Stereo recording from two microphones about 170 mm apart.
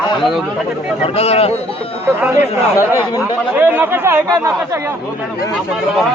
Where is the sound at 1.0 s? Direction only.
35° left (ahead or behind).